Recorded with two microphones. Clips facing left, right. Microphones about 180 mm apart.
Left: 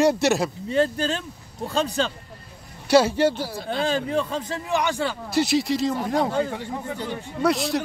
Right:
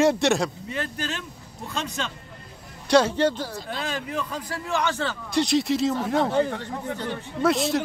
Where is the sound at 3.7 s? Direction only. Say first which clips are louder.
Left 9 dB; 30° left (ahead or behind); by 5.9 s centre (ahead or behind).